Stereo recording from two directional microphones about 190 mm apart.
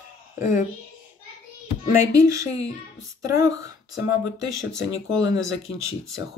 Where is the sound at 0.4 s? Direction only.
40° left (ahead or behind).